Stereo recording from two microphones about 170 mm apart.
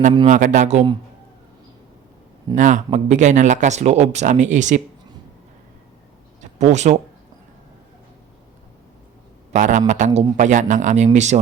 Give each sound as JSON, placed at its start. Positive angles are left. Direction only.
{"t": 0.3, "sound": "speech", "side_deg": -50}
{"t": 2.6, "sound": "speech", "side_deg": -45}
{"t": 6.4, "sound": "a sound", "side_deg": -45}
{"t": 9.5, "sound": "speech", "side_deg": -45}